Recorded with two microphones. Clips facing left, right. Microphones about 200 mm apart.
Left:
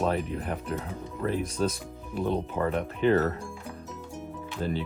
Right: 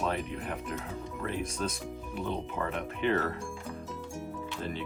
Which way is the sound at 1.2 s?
35° left (ahead or behind).